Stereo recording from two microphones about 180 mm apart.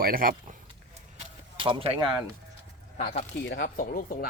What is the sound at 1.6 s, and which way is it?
Speech, 30° right (ahead or behind).